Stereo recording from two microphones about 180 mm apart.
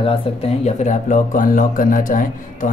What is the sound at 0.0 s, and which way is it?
Speech, 30° left (ahead or behind).